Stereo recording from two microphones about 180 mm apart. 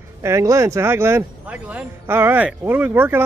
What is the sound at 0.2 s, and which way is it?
Speech, 15° right (ahead or behind).